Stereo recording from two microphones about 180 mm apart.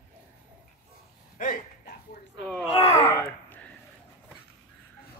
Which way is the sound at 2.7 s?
30° left (ahead or behind).